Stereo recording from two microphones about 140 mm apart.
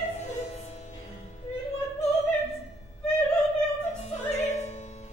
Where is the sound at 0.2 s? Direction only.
55° left (ahead or behind).